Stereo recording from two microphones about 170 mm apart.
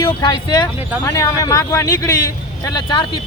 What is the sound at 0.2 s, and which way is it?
Speech, 25° left (ahead or behind).